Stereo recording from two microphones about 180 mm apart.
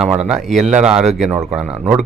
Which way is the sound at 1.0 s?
40° right (ahead or behind).